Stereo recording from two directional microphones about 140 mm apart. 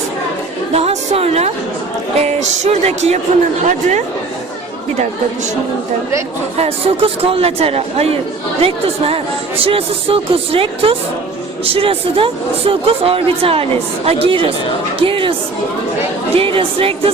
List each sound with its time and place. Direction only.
0.7 s speech: 45° right (ahead or behind)
6.6 s speech: 45° right (ahead or behind)
16.3 s speech: 40° right (ahead or behind)